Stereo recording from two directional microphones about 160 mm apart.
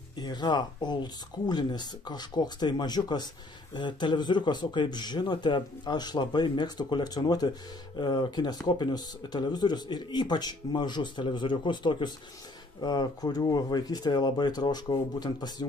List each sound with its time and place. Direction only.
0.2 s speech: 25° left (ahead or behind)